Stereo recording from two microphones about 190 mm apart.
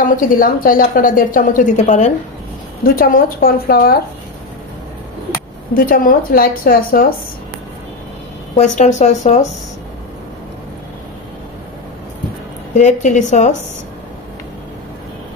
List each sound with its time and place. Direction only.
0.0 s a woman's voice: 45° left (ahead or behind)
5.8 s a woman's voice: 50° left (ahead or behind)
8.5 s speech: 40° left (ahead or behind)
12.7 s speech: 40° left (ahead or behind)